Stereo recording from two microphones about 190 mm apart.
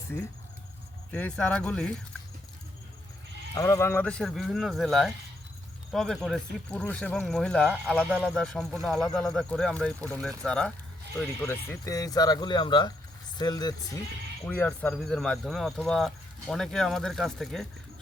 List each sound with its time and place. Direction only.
1.1 s speech: 5° left (ahead or behind)
3.5 s speech: 15° left (ahead or behind)
14.4 s speech: 10° left (ahead or behind)